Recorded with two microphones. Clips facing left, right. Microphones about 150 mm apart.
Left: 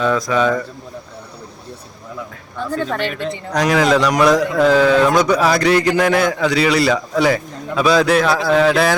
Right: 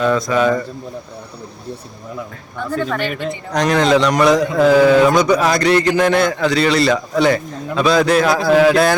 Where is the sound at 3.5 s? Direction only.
5° left (ahead or behind).